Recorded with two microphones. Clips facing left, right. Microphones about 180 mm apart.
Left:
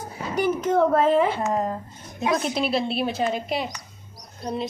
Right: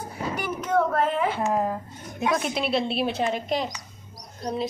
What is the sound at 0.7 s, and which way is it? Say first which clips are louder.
Speech: left 3 dB; 25° left (ahead or behind).